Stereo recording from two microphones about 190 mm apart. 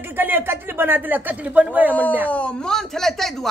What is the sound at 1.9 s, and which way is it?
Speech, 10° left (ahead or behind).